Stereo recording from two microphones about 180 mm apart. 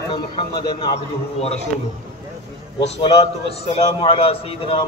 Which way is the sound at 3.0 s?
35° left (ahead or behind).